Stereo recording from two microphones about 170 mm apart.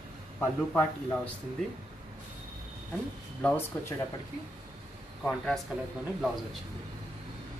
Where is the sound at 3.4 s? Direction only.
10° left (ahead or behind).